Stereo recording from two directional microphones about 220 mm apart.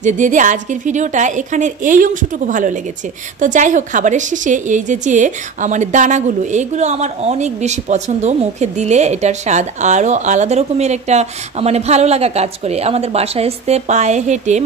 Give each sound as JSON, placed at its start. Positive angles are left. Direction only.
{"t": 0.0, "sound": "a woman's voice", "side_deg": -35}